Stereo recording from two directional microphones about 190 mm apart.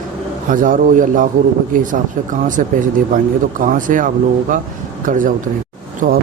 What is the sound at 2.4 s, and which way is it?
Speech, 45° right (ahead or behind).